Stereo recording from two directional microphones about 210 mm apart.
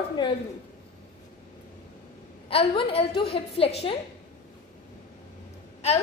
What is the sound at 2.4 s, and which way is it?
A woman's voice, 25° left (ahead or behind).